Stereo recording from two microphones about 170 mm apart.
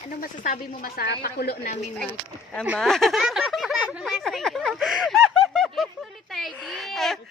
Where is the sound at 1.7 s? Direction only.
40° left (ahead or behind).